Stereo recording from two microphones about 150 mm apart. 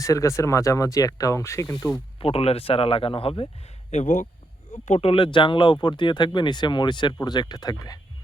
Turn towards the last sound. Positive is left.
turn(degrees=25)  # may be behind; listen again after turning